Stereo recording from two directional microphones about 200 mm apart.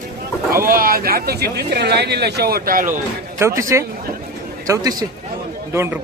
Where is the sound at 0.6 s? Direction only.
45° right (ahead or behind).